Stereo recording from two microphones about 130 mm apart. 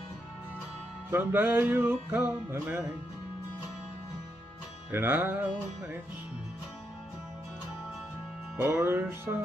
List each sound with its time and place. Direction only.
1.1 s music: 15° right (ahead or behind)
4.9 s music: 15° right (ahead or behind)
8.5 s music: 20° right (ahead or behind)